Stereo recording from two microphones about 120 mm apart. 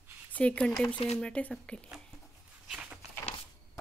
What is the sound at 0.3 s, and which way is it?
A woman's voice, 10° left (ahead or behind).